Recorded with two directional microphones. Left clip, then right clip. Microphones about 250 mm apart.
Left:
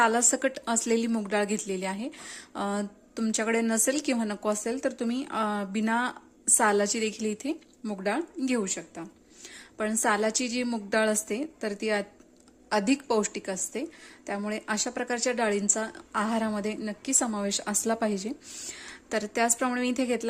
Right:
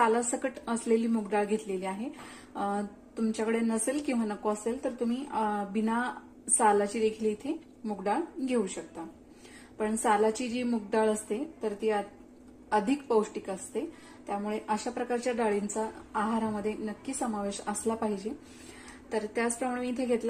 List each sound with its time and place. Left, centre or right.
0.0 s a woman's voice: left